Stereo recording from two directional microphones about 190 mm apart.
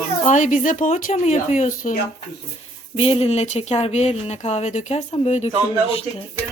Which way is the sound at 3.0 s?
30° left (ahead or behind).